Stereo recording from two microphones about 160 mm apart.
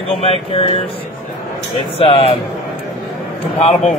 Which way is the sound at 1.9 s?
35° left (ahead or behind).